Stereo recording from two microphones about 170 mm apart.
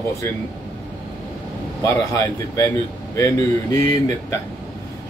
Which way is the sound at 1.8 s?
15° left (ahead or behind).